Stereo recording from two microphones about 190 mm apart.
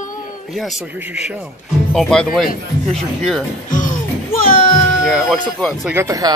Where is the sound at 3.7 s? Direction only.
45° left (ahead or behind).